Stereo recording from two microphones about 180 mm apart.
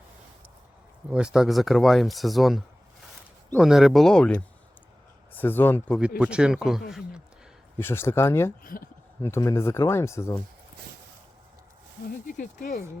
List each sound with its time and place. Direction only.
1.1 s speech: 5° right (ahead or behind)
6.0 s speech: 5° right (ahead or behind)
7.8 s speech: 15° left (ahead or behind)
8.6 s speech: 50° left (ahead or behind)
9.2 s speech: 15° left (ahead or behind)
12.3 s speech: 50° left (ahead or behind)